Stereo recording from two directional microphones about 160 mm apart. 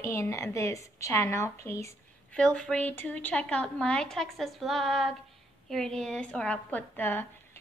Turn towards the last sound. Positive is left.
turn(degrees=10)  # may be behind; listen again after turning